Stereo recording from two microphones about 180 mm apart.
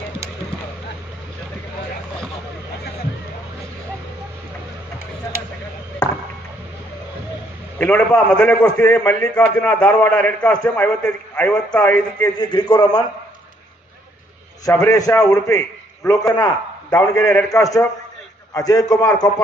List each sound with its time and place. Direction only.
7.8 s a man's voice: 5° left (ahead or behind)
12.4 s a man's voice: 25° left (ahead or behind)
14.6 s a man's voice: 20° left (ahead or behind)